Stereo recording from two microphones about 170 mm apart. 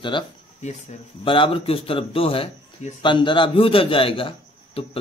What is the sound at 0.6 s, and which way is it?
Speech, 40° left (ahead or behind).